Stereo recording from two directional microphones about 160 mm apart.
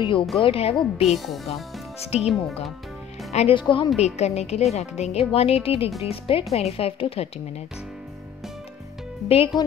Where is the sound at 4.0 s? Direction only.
45° left (ahead or behind).